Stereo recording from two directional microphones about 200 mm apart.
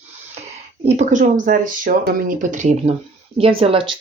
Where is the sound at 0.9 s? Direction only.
35° right (ahead or behind).